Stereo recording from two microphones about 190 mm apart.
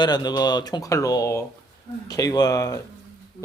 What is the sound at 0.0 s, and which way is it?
Speech, 20° left (ahead or behind).